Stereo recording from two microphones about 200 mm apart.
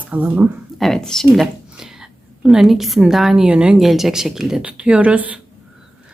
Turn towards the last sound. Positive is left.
turn(degrees=-5)  # may be behind; listen again after turning